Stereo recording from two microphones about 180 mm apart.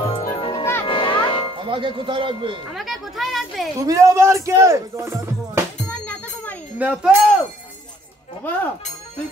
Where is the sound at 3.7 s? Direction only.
20° right (ahead or behind).